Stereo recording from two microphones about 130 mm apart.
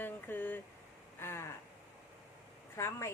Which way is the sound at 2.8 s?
20° left (ahead or behind).